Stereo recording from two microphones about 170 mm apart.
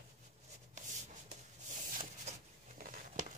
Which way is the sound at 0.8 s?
45° right (ahead or behind).